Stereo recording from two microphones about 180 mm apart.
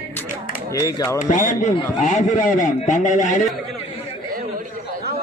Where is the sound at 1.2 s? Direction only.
45° left (ahead or behind).